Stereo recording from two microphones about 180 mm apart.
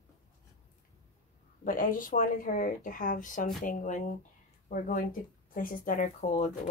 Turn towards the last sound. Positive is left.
turn(degrees=45)  # may be behind; listen again after turning